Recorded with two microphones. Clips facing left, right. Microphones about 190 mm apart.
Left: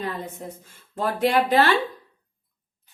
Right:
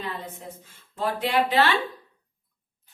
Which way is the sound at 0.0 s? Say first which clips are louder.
Left 4 dB; 45° left (ahead or behind).